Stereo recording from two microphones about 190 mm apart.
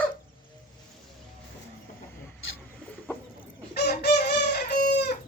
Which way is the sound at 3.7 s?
60° left (ahead or behind).